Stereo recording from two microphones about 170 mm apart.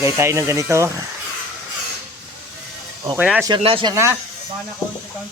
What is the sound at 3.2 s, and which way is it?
Speech, 5° right (ahead or behind).